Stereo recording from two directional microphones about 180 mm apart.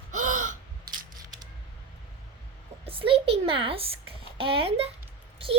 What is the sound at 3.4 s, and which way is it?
A child's voice, 30° right (ahead or behind).